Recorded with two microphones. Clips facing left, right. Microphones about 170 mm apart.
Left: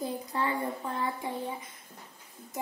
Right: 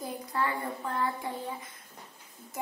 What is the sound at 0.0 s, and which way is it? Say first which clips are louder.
A child's voice: left 1 dB; 20° left (ahead or behind).